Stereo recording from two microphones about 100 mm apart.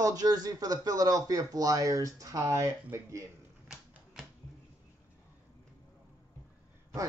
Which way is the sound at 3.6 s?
5° right (ahead or behind).